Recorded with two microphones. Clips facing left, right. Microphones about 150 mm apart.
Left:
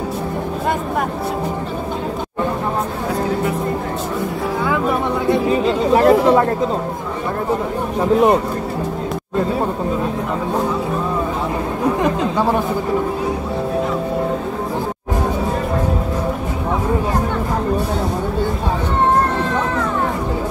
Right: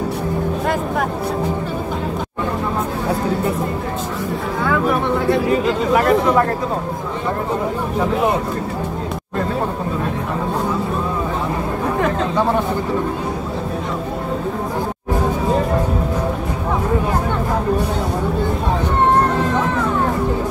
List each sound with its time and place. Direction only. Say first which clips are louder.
5.9 s chatter: left 4 dB; 25° left (ahead or behind)
12.0 s chatter: left 1 dB; 10° left (ahead or behind)